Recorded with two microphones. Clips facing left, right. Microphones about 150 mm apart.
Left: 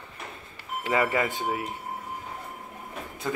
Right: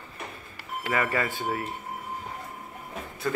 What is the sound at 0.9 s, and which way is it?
Speech, 20° left (ahead or behind).